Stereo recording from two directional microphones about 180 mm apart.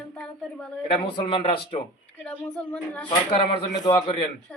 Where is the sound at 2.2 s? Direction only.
5° left (ahead or behind).